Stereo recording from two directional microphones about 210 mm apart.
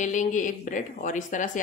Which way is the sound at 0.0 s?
35° left (ahead or behind).